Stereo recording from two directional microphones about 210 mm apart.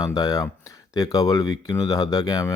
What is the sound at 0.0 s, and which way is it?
Speech, 15° left (ahead or behind).